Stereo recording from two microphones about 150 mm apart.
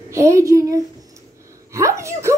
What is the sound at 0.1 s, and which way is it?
Speech, 20° right (ahead or behind).